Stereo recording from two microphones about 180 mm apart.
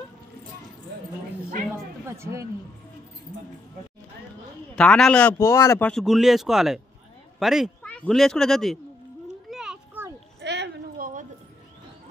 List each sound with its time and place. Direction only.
2.0 s speech: 15° right (ahead or behind)
4.7 s a man's voice: 5° left (ahead or behind)
9.5 s children playing: centre (ahead or behind)
10.4 s a sound: 70° right (ahead or behind); by 11.2 s 50° right (ahead or behind)